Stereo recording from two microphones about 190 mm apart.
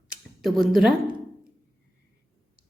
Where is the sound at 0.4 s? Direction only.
Centre (ahead or behind).